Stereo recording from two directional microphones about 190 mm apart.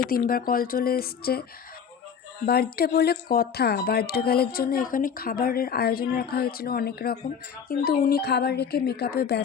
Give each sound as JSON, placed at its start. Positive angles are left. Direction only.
{"t": 0.0, "sound": "speech", "side_deg": 50}
{"t": 2.5, "sound": "speech", "side_deg": 55}